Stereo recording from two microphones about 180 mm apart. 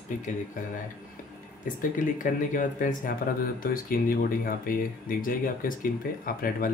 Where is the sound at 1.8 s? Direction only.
45° left (ahead or behind).